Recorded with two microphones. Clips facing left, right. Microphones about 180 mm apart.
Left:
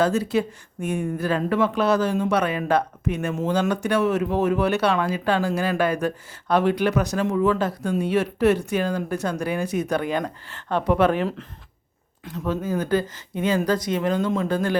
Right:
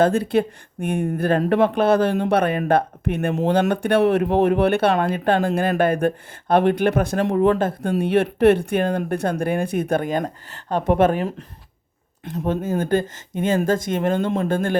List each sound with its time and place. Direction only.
0.0 s speech: 55° right (ahead or behind)
12.5 s speech: 50° right (ahead or behind)